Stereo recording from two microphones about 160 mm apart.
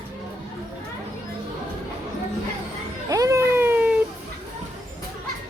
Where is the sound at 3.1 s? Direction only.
20° right (ahead or behind).